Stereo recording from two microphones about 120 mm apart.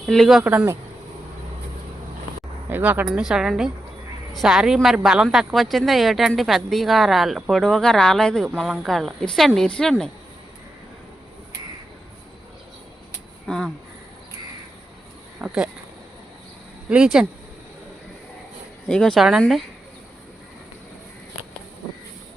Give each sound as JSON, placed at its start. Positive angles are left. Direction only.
{"t": 0.0, "sound": "speech", "side_deg": 0}
{"t": 0.4, "sound": "speech", "side_deg": -20}
{"t": 2.6, "sound": "a woman's voice", "side_deg": -15}
{"t": 13.5, "sound": "a woman's voice", "side_deg": 5}
{"t": 15.4, "sound": "speech", "side_deg": -10}
{"t": 16.9, "sound": "a woman's voice", "side_deg": -5}
{"t": 18.9, "sound": "a woman's voice", "side_deg": 5}